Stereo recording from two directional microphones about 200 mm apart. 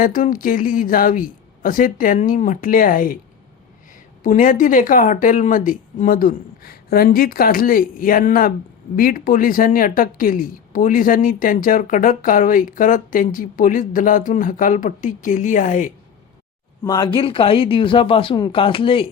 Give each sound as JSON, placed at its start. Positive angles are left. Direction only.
{"t": 0.0, "sound": "a woman's voice", "side_deg": 45}
{"t": 4.2, "sound": "a woman's voice", "side_deg": 40}
{"t": 16.8, "sound": "speech", "side_deg": 20}